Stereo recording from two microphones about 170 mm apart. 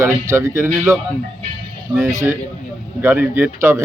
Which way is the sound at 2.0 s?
15° right (ahead or behind).